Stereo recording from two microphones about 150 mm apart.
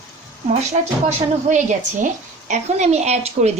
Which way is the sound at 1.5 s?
55° right (ahead or behind).